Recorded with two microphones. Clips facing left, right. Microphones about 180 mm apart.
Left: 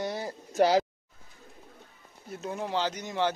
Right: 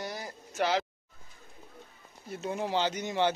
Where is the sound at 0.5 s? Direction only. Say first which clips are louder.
Left 6 dB; 40° left (ahead or behind).